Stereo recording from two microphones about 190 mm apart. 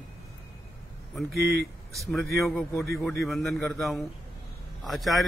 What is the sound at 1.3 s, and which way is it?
Speech, 55° right (ahead or behind).